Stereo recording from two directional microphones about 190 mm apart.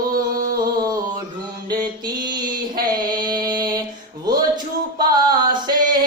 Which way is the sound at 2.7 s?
20° right (ahead or behind).